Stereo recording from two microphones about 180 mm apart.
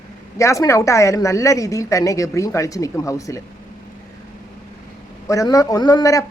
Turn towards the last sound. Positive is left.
turn(degrees=20)  # may be behind; listen again after turning